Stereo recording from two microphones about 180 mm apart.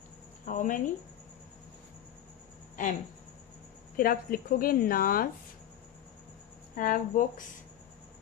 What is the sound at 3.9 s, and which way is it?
Speech, 50° left (ahead or behind).